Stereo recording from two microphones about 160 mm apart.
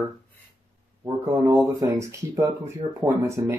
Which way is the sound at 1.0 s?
20° right (ahead or behind).